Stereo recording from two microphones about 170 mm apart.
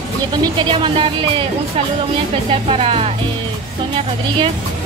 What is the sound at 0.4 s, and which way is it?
Speech, 30° right (ahead or behind).